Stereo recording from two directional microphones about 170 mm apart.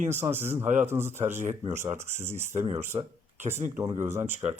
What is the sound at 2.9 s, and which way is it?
Speech, 30° right (ahead or behind).